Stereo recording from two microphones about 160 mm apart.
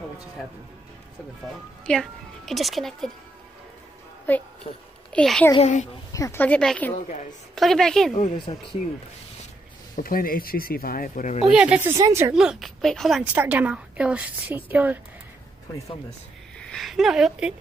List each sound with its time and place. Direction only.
1.9 s a woman's voice: 5° left (ahead or behind)
4.3 s a woman's voice: 10° left (ahead or behind)
5.6 s a woman's voice: 50° left (ahead or behind)
6.1 s a woman's voice: 15° left (ahead or behind)
8.5 s speech: 30° left (ahead or behind)
9.9 s speech: 65° left (ahead or behind)
11.4 s a woman's voice: 5° right (ahead or behind)
11.9 s a woman's voice: 15° right (ahead or behind)
12.4 s a woman's voice: centre (ahead or behind)
13.2 s a woman's voice: 10° right (ahead or behind)
16.5 s speech: 5° left (ahead or behind)